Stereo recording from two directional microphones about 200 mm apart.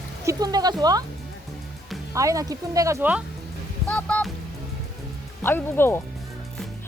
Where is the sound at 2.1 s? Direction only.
15° right (ahead or behind).